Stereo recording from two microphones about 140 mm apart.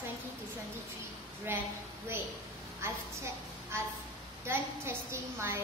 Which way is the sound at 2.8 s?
20° right (ahead or behind).